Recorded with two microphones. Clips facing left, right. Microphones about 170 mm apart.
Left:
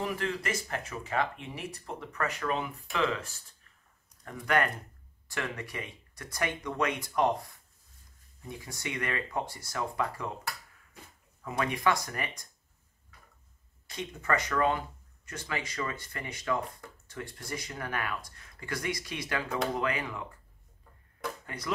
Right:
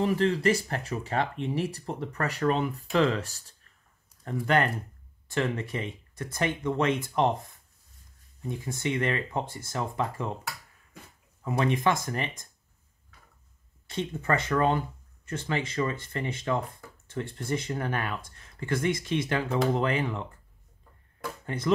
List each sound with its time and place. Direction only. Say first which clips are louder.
0.0 s speech: right 9 dB; 30° right (ahead or behind)
4.2 s speech: right 3 dB; 30° right (ahead or behind)
8.5 s speech: right 8 dB; 25° right (ahead or behind)
11.4 s speech: right 4 dB; 25° right (ahead or behind)
13.8 s speech: right 4 dB; 30° right (ahead or behind)
21.5 s speech: right 10 dB; 25° right (ahead or behind)